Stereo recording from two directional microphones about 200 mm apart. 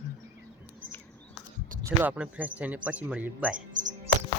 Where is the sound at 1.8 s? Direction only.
10° right (ahead or behind).